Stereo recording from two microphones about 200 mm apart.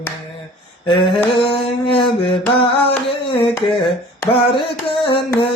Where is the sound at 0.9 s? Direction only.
25° left (ahead or behind).